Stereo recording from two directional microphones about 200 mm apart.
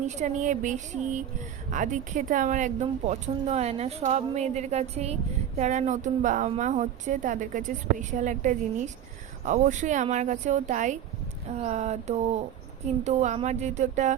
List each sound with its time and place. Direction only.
0.1 s a woman's voice: 35° right (ahead or behind)